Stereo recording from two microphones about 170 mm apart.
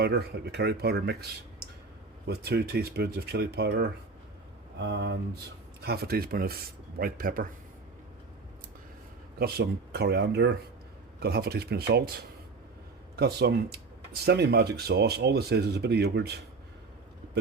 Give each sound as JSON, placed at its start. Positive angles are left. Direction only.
{"t": 0.0, "sound": "speech", "side_deg": -70}
{"t": 4.8, "sound": "speech", "side_deg": -90}
{"t": 5.8, "sound": "speech", "side_deg": -65}
{"t": 9.4, "sound": "speech", "side_deg": -70}